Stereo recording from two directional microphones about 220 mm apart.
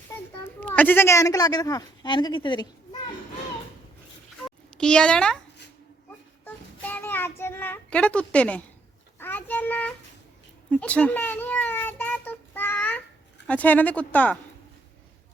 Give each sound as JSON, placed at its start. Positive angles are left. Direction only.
{"t": 0.1, "sound": "speech", "side_deg": 10}
{"t": 4.8, "sound": "a child's voice", "side_deg": 5}
{"t": 6.1, "sound": "child singing", "side_deg": 10}
{"t": 9.1, "sound": "a child's voice", "side_deg": 10}